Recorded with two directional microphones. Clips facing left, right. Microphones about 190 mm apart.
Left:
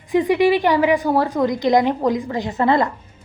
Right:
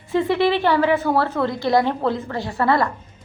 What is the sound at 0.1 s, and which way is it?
A woman's voice, 15° left (ahead or behind).